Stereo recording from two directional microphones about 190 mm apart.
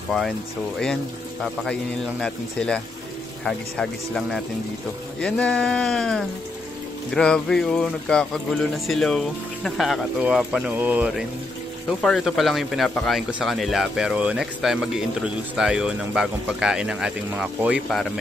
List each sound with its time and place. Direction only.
1.4 s speech: centre (ahead or behind)